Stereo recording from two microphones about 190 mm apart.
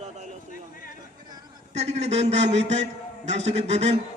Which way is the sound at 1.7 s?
35° right (ahead or behind).